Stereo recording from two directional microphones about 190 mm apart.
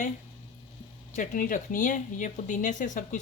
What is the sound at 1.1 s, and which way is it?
Speech, 45° left (ahead or behind).